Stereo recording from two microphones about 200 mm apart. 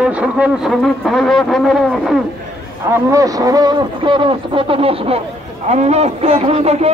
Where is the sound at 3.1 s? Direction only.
15° right (ahead or behind).